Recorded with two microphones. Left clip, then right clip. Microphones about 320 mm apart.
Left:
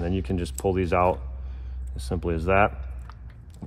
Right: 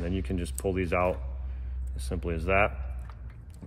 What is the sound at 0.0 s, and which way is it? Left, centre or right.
Speech, left.